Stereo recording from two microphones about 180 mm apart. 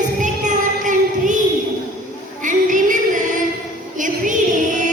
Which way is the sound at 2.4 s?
45° right (ahead or behind).